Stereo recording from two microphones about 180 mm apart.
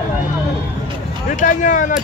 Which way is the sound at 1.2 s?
45° left (ahead or behind).